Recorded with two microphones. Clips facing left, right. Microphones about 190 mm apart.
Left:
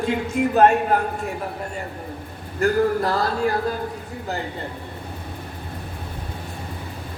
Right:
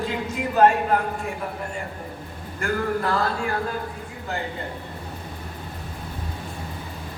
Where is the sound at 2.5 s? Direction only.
40° left (ahead or behind).